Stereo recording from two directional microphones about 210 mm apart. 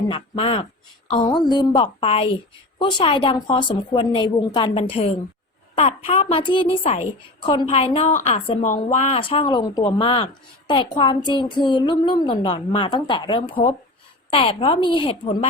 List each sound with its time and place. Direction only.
0.1 s speech: 25° left (ahead or behind)